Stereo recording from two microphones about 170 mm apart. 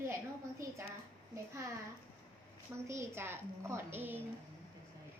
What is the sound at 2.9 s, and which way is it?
A woman's voice, 15° right (ahead or behind).